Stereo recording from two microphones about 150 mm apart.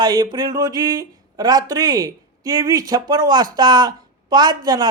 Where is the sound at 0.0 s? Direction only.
30° right (ahead or behind).